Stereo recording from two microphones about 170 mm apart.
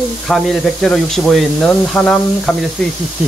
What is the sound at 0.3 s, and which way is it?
Speech, 5° left (ahead or behind).